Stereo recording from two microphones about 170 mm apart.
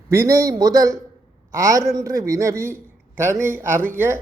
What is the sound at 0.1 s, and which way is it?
A man's voice, 15° right (ahead or behind).